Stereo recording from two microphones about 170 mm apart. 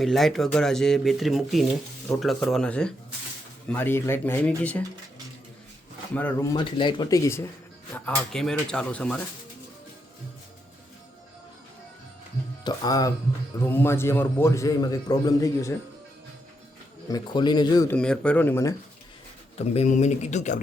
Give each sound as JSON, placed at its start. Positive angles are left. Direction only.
{"t": 0.0, "sound": "a man's voice", "side_deg": 0}
{"t": 6.1, "sound": "a man's voice", "side_deg": 10}
{"t": 6.5, "sound": "a man's voice", "side_deg": 30}
{"t": 12.6, "sound": "a man's voice", "side_deg": 20}
{"t": 17.1, "sound": "speech", "side_deg": 25}
{"t": 17.9, "sound": "a man's voice", "side_deg": 5}
{"t": 19.5, "sound": "speech", "side_deg": 40}